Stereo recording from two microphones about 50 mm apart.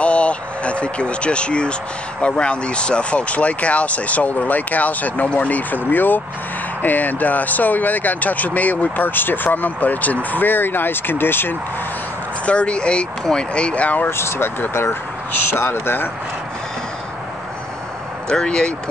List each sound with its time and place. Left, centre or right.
0.0 s speech: left
12.4 s speech: left
14.0 s speech: left
18.3 s speech: centre